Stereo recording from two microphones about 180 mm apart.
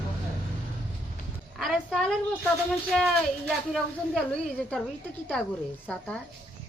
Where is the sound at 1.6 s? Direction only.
Centre (ahead or behind).